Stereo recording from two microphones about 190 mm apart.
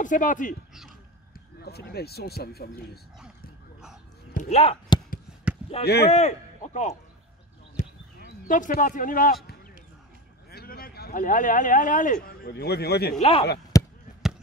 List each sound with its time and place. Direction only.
0.0 s a man's voice: 45° left (ahead or behind)
1.6 s speech: 55° left (ahead or behind)
4.3 s chop: 40° left (ahead or behind)
6.0 s a man's voice: 35° left (ahead or behind)
7.8 s a sound: 40° left (ahead or behind)
8.5 s a man's voice: 45° left (ahead or behind)
12.3 s speech: 55° left (ahead or behind)
13.2 s speech: 30° left (ahead or behind)
13.7 s basketball bounce: 15° left (ahead or behind)